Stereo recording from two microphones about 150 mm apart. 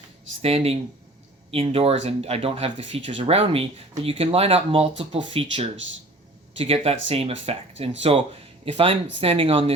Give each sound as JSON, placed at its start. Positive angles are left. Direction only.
{"t": 0.4, "sound": "speech", "side_deg": -40}